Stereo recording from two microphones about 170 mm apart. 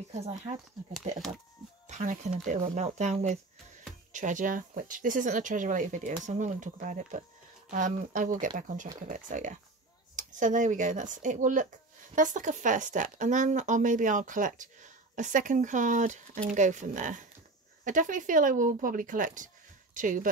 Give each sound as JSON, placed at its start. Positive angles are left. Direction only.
{"t": 0.1, "sound": "speech", "side_deg": -40}
{"t": 1.9, "sound": "speech", "side_deg": -45}